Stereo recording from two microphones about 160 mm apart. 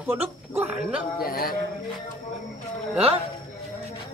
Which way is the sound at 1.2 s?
65° left (ahead or behind).